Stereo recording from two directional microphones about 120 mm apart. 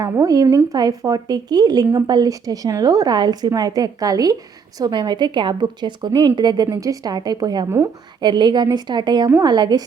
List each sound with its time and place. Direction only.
0.0 s speech: 30° right (ahead or behind)